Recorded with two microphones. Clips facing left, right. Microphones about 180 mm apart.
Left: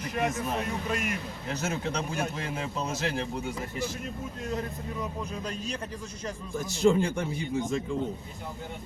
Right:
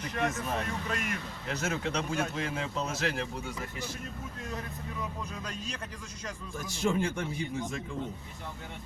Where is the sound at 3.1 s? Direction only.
25° left (ahead or behind).